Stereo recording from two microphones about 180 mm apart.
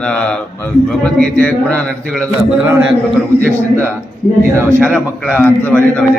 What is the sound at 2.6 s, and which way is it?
A man's voice, 10° right (ahead or behind).